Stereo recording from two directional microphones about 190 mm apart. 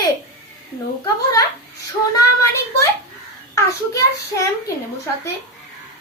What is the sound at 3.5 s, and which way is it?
Speech, 15° left (ahead or behind).